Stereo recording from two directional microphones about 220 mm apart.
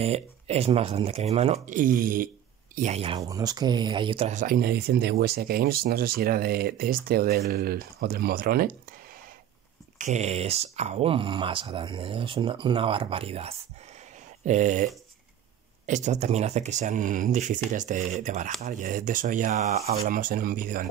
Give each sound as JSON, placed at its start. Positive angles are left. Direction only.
{"t": 0.0, "sound": "speech", "side_deg": -30}
{"t": 3.2, "sound": "speech", "side_deg": -15}
{"t": 9.9, "sound": "speech", "side_deg": -35}
{"t": 15.9, "sound": "speech", "side_deg": -30}